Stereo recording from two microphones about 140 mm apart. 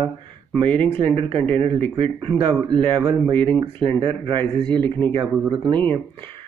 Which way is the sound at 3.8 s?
40° right (ahead or behind).